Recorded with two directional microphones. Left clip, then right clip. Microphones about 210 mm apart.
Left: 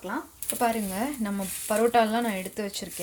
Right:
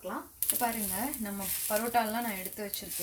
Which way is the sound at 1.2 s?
50° left (ahead or behind).